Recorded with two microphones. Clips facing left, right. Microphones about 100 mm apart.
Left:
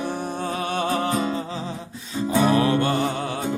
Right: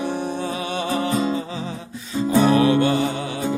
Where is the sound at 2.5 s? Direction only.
40° left (ahead or behind).